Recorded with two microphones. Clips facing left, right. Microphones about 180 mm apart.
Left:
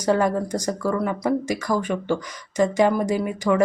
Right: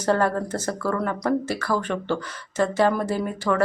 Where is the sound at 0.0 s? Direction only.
10° left (ahead or behind).